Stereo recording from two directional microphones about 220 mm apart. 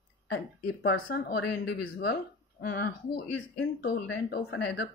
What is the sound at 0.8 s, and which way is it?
Speech, 50° left (ahead or behind).